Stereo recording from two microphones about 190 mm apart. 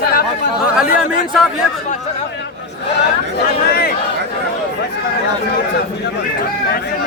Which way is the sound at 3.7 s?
55° left (ahead or behind).